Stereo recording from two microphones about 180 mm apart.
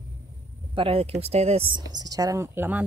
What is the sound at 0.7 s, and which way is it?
Speech, 30° right (ahead or behind).